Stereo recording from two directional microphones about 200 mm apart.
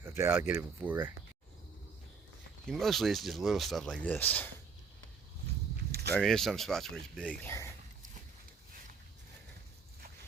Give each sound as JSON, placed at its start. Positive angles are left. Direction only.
{"t": 0.0, "sound": "speech", "side_deg": -10}
{"t": 2.6, "sound": "speech", "side_deg": 0}
{"t": 5.9, "sound": "a sound", "side_deg": -55}
{"t": 6.1, "sound": "speech", "side_deg": 5}